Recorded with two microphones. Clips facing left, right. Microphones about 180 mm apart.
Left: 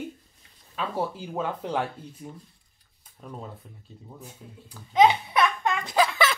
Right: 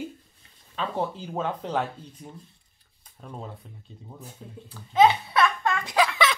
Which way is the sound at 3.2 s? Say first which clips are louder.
Even; centre (ahead or behind).